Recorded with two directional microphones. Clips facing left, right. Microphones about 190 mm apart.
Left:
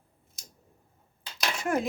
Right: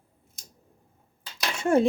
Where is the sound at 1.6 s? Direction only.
25° right (ahead or behind).